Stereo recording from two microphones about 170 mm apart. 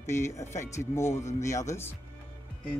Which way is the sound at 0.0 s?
15° left (ahead or behind).